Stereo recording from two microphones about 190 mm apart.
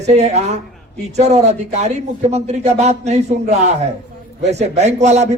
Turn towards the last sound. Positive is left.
turn(degrees=-35)  # may be behind; listen again after turning